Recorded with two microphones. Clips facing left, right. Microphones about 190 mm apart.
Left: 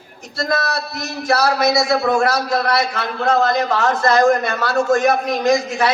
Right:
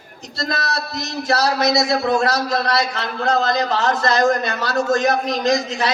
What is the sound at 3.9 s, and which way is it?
Speech, 20° right (ahead or behind).